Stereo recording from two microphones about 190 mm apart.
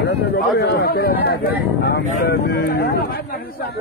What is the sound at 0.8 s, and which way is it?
Speech, 55° left (ahead or behind).